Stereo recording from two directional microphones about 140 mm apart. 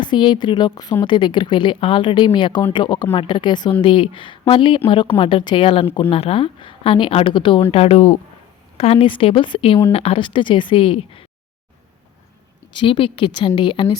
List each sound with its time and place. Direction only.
0.0 s a woman's voice: 35° left (ahead or behind)
12.7 s a woman's voice: 40° left (ahead or behind)